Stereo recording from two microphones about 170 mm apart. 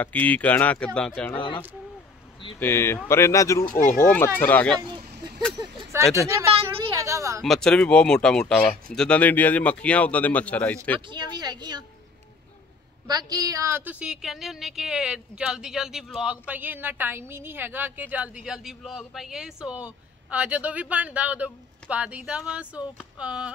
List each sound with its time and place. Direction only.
0.0 s a man's voice: 10° left (ahead or behind)
2.6 s a man's voice: 15° left (ahead or behind)
3.7 s speech: 55° left (ahead or behind)
4.0 s a man's voice: 15° left (ahead or behind)
5.6 s a sound: 15° right (ahead or behind)
6.9 s a woman's voice: 15° right (ahead or behind)
7.4 s a man's voice: centre (ahead or behind)
11.1 s speech: 25° right (ahead or behind)
13.0 s a woman's voice: 25° right (ahead or behind); by 23.5 s 5° right (ahead or behind)